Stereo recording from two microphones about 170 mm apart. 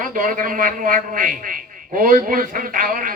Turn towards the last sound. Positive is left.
turn(degrees=-50)  # may be behind; listen again after turning